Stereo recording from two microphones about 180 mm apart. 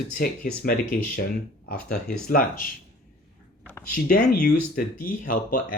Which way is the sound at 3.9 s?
50° left (ahead or behind).